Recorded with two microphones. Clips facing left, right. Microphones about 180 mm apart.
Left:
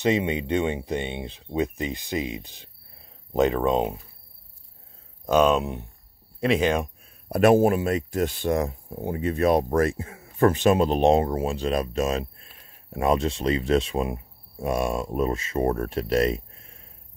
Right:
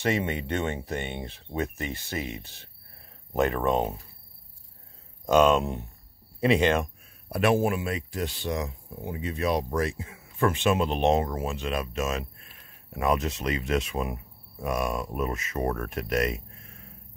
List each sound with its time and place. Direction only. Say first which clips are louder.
0.0 s speech: left 4 dB; 15° left (ahead or behind)
5.3 s speech: left 1 dB; 10° left (ahead or behind)
7.2 s speech: left 6 dB; 40° left (ahead or behind)